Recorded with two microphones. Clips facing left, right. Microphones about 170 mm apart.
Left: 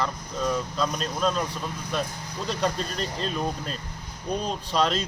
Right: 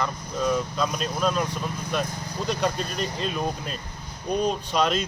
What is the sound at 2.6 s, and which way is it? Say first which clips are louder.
Speech: right 1 dB; 5° right (ahead or behind).